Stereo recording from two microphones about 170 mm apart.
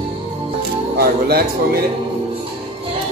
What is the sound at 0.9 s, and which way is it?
Speech, 65° right (ahead or behind).